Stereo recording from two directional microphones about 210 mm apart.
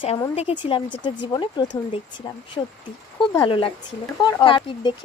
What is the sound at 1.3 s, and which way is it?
Speech, 20° left (ahead or behind).